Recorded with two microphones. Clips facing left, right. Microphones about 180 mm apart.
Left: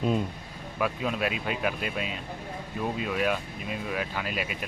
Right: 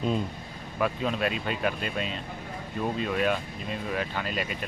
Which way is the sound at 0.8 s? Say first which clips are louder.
Right 1 dB; 5° left (ahead or behind).